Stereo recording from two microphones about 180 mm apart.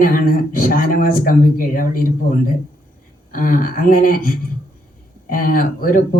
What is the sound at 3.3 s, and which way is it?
Speech, 50° left (ahead or behind).